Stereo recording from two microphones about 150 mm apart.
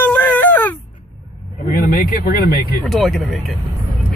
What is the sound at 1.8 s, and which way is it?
Speech, 75° left (ahead or behind).